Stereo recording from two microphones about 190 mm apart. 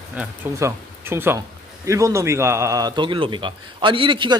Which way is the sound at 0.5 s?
15° right (ahead or behind).